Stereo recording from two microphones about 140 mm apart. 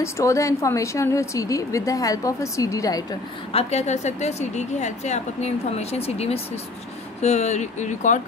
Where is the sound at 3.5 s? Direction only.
50° left (ahead or behind).